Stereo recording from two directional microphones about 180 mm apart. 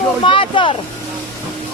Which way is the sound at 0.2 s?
30° left (ahead or behind).